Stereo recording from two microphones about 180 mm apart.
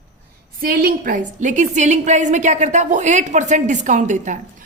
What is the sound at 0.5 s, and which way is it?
A woman's voice, 55° right (ahead or behind).